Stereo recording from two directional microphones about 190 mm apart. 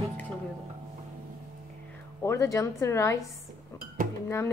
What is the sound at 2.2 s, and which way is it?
Speech, 15° left (ahead or behind).